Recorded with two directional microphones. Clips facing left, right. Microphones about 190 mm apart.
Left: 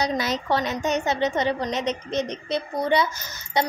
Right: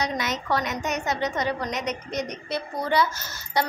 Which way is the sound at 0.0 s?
30° left (ahead or behind).